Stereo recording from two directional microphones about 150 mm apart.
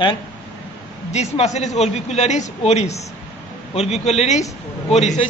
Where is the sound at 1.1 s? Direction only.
45° left (ahead or behind).